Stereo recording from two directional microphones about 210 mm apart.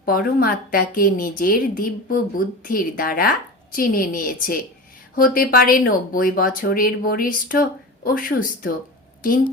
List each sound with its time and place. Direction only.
0.0 s a woman's voice: 45° left (ahead or behind)